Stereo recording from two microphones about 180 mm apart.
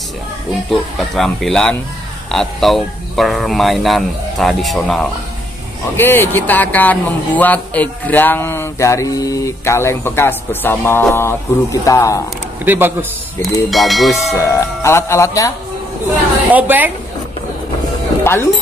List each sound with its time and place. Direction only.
0.7 s speech: centre (ahead or behind); by 12.2 s 15° left (ahead or behind)
12.6 s a woman's voice: 10° right (ahead or behind)
13.7 s speech: centre (ahead or behind)
14.5 s speech: 15° left (ahead or behind)
16.4 s a woman's voice: 10° right (ahead or behind)
18.2 s music: 15° left (ahead or behind)